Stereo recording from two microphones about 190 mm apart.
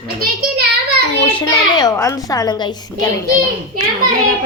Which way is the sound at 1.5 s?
20° left (ahead or behind).